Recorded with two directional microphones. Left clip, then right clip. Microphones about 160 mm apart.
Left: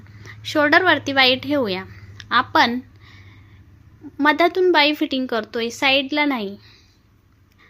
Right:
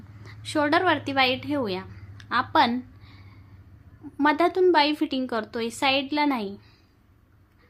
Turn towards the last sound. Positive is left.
turn(degrees=20)  # may be behind; listen again after turning